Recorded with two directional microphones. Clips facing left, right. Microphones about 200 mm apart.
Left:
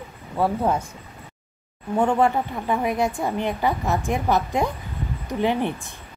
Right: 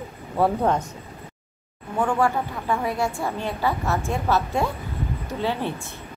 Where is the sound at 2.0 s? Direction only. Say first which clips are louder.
Left 2 dB; 20° left (ahead or behind).